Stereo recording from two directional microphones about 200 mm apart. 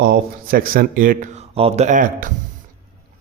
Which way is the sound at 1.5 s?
30° right (ahead or behind).